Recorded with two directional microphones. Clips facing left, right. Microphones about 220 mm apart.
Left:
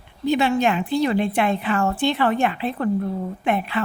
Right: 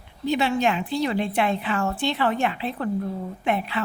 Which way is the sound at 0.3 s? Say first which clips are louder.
Left 3 dB; 50° left (ahead or behind).